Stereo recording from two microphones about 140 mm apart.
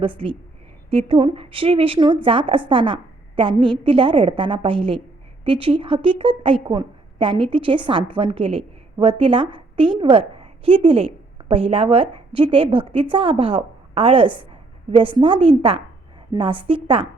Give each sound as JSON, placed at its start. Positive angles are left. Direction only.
{"t": 0.0, "sound": "a woman's voice", "side_deg": -40}